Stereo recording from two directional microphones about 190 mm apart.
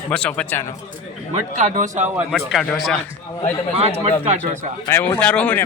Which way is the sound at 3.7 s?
30° right (ahead or behind).